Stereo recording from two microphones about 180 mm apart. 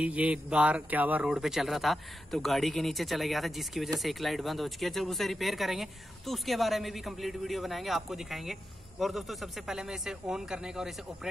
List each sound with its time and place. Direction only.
0.0 s speech: 5° right (ahead or behind)